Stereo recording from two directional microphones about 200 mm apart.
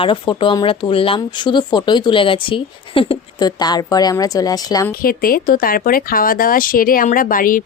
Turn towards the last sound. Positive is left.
turn(degrees=45)  # may be behind; listen again after turning